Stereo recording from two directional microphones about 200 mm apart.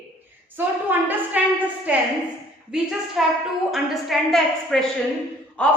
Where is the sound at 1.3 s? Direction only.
5° right (ahead or behind).